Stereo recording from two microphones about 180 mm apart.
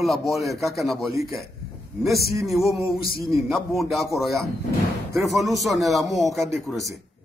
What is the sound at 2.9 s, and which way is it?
Speech, 55° left (ahead or behind).